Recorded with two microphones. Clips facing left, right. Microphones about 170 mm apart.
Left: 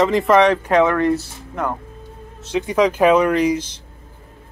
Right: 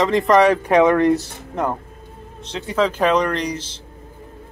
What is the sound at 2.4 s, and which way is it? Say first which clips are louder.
Speech: left 3 dB; 10° left (ahead or behind).